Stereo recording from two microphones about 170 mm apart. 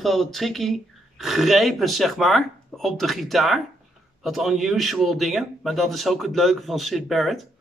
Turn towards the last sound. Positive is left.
turn(degrees=0)  # may be behind; listen again after turning